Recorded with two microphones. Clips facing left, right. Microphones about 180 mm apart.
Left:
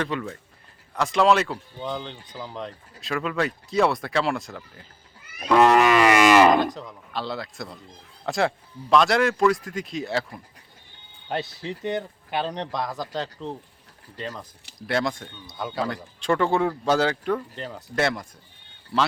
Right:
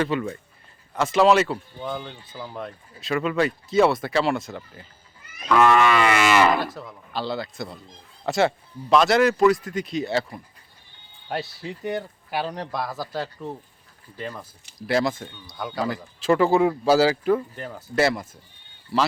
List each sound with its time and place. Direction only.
0.0 s a man's voice: 5° right (ahead or behind)
3.0 s a man's voice: centre (ahead or behind)
5.4 s livestock: 35° left (ahead or behind)
6.2 s speech: 15° left (ahead or behind)
6.8 s a man's voice: centre (ahead or behind)
14.8 s a man's voice: centre (ahead or behind)